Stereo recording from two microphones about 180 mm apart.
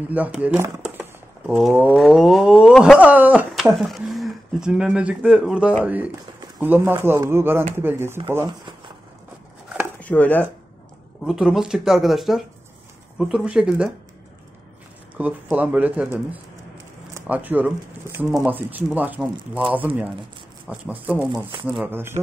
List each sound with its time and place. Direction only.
0.1 s speech: 10° right (ahead or behind)
8.5 s a sound: 25° right (ahead or behind)
9.9 s speech: 10° left (ahead or behind)
11.2 s speech: centre (ahead or behind)
15.1 s speech: 10° right (ahead or behind)
20.6 s speech: 5° right (ahead or behind)